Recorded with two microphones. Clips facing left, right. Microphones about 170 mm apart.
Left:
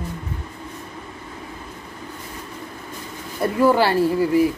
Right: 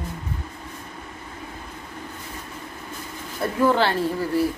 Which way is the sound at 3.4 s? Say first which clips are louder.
Left 3 dB; 10° left (ahead or behind).